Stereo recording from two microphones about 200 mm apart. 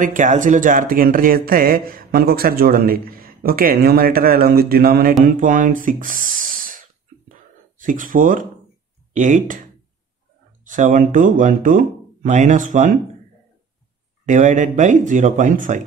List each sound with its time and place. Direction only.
0.0 s speech: 40° right (ahead or behind)
7.8 s speech: 40° right (ahead or behind)
10.7 s speech: 40° right (ahead or behind)
14.2 s speech: 40° right (ahead or behind)